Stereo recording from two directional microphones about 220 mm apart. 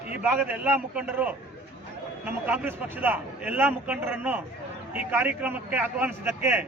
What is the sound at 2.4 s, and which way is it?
A man's voice, 10° right (ahead or behind).